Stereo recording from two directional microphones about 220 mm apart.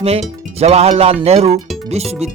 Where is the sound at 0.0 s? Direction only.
30° right (ahead or behind).